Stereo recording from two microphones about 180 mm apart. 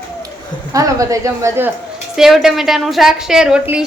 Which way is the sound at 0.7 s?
20° right (ahead or behind).